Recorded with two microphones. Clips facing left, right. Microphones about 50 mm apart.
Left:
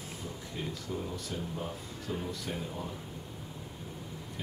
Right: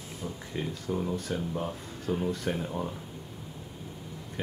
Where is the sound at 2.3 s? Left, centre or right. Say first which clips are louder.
Right 6 dB; right.